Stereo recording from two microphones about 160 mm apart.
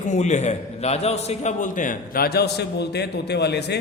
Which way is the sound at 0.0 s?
45° left (ahead or behind).